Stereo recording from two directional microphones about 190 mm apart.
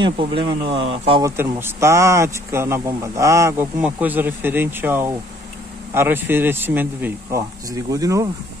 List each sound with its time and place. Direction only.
0.0 s speech: 25° right (ahead or behind)
1.2 s speech: 10° right (ahead or behind)